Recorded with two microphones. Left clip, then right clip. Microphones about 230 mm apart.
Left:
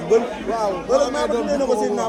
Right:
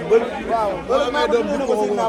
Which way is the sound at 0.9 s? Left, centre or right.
Left.